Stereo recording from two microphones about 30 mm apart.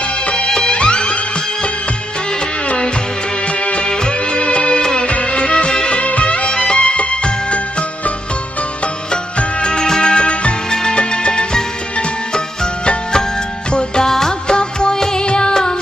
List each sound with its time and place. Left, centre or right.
0.5 s music: left
3.6 s music: left
6.5 s music: left
9.4 s music: left
10.7 s music: left
13.7 s music: left
14.0 s music: centre
14.5 s music: left